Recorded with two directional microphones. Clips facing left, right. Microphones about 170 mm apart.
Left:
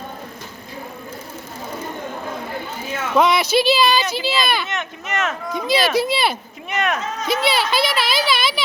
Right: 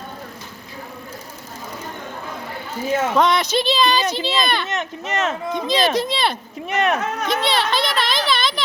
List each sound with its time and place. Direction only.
3.2 s a child's voice: 5° left (ahead or behind)
4.7 s speech: 35° right (ahead or behind)
5.6 s a child's voice: 10° left (ahead or behind)
6.7 s speech: 35° right (ahead or behind)
7.0 s speech: 60° right (ahead or behind)
7.3 s a sound: 5° left (ahead or behind)